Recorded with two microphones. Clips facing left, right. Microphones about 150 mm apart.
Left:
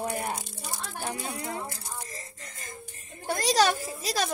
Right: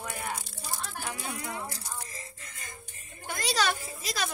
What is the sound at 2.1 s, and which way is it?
Music, 40° left (ahead or behind).